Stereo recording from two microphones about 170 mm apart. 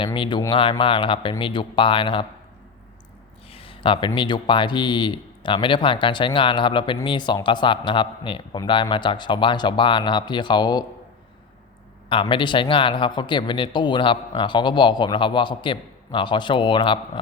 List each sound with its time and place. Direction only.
0.0 s speech: 30° left (ahead or behind)
3.5 s speech: 30° left (ahead or behind)
12.0 s speech: 30° left (ahead or behind)